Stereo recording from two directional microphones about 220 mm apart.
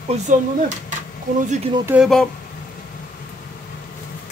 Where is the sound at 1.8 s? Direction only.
5° right (ahead or behind).